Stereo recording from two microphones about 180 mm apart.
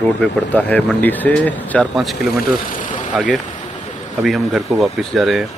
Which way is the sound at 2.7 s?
45° left (ahead or behind).